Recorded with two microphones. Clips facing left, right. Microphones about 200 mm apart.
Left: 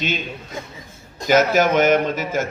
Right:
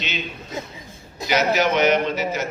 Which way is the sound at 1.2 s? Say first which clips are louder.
Left 4 dB; 45° left (ahead or behind).